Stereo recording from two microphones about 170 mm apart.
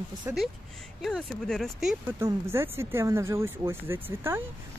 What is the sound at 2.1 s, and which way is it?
Speech, 15° right (ahead or behind).